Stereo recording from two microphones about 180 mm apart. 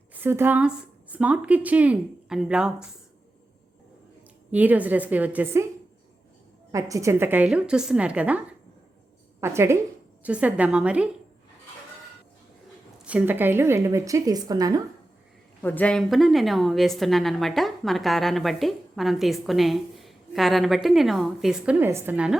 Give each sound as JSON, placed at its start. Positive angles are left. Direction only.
{"t": 0.1, "sound": "a woman's voice", "side_deg": -10}
{"t": 4.5, "sound": "a woman's voice", "side_deg": -10}
{"t": 6.7, "sound": "a woman's voice", "side_deg": -20}
{"t": 13.1, "sound": "a woman's voice", "side_deg": -10}
{"t": 15.6, "sound": "a woman's voice", "side_deg": 10}